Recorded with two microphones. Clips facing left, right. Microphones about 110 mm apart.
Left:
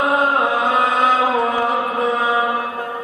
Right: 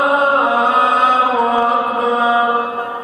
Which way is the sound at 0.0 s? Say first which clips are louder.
Right 3 dB; 25° right (ahead or behind).